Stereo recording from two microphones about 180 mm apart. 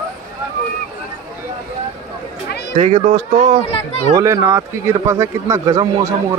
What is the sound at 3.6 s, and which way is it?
Speech, 35° left (ahead or behind).